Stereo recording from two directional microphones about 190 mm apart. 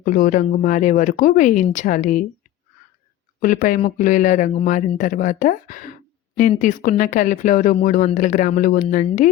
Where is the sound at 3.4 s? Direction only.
45° left (ahead or behind).